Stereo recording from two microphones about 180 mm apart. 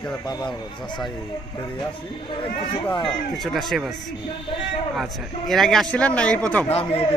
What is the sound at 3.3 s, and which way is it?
Speech, centre (ahead or behind).